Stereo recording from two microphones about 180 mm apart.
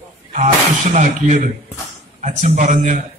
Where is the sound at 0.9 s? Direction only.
40° right (ahead or behind).